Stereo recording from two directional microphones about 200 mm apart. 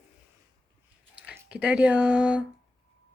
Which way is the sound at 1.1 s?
5° right (ahead or behind).